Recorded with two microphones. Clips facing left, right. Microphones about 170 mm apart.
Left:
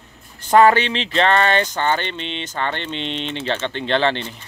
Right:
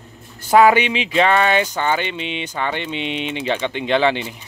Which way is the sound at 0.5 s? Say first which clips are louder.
Right 1 dB; 10° right (ahead or behind).